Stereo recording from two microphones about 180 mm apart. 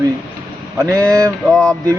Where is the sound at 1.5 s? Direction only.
5° left (ahead or behind).